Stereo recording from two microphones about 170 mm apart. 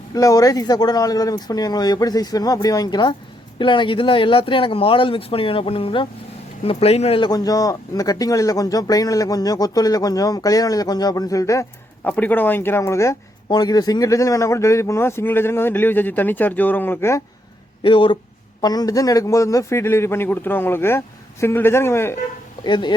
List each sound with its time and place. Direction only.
0.1 s speech: 20° left (ahead or behind)
17.8 s speech: 30° left (ahead or behind); by 22.2 s 15° left (ahead or behind)
22.6 s speech: 25° left (ahead or behind)